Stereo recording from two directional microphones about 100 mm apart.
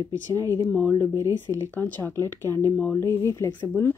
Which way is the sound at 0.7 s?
15° left (ahead or behind).